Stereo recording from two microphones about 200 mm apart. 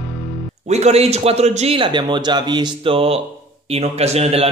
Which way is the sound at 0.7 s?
35° right (ahead or behind).